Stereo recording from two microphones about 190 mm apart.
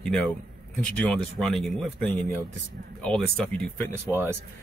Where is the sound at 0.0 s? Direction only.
Centre (ahead or behind).